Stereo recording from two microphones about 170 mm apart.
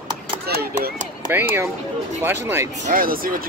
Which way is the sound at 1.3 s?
15° right (ahead or behind).